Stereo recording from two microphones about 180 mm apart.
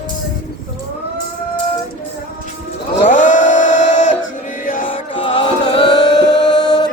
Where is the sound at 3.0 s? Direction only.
45° left (ahead or behind).